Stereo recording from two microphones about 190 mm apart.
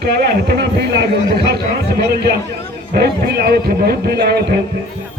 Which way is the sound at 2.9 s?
55° right (ahead or behind).